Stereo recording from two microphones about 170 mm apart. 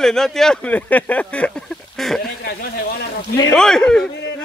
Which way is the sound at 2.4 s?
65° left (ahead or behind).